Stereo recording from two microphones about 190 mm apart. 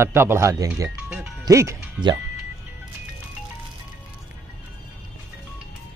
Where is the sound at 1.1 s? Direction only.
15° right (ahead or behind).